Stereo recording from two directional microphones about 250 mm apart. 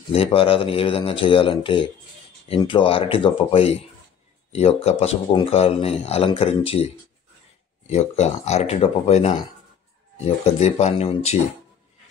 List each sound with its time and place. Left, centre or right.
0.1 s speech: left